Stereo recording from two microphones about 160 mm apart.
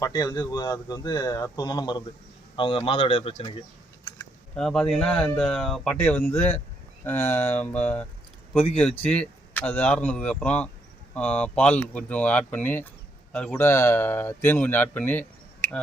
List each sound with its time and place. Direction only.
0.0 s a man's voice: 25° left (ahead or behind)
4.5 s speech: 5° left (ahead or behind)